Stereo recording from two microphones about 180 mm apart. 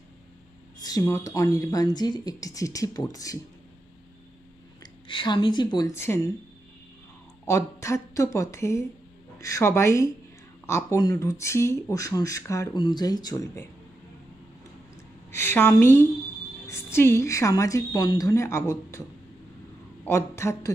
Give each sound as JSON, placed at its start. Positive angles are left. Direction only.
{"t": 0.7, "sound": "speech", "side_deg": 20}
{"t": 5.0, "sound": "speech", "side_deg": 25}
{"t": 7.4, "sound": "a woman's voice", "side_deg": 15}
{"t": 15.3, "sound": "a woman's voice", "side_deg": 15}
{"t": 20.1, "sound": "a woman's voice", "side_deg": 15}